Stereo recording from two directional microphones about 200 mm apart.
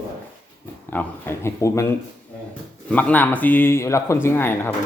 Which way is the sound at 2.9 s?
10° left (ahead or behind).